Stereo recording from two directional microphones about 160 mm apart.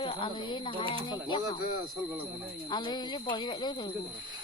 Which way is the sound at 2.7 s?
25° left (ahead or behind).